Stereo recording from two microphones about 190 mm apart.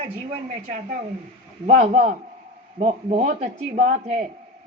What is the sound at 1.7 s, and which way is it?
A man's voice, 40° right (ahead or behind).